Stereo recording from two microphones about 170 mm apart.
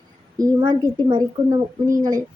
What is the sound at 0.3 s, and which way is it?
A child's voice, 20° right (ahead or behind).